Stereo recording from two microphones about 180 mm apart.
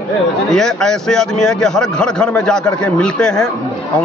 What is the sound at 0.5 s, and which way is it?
A man's voice, 5° left (ahead or behind).